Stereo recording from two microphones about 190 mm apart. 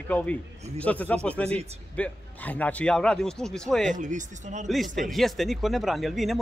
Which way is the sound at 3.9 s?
40° right (ahead or behind).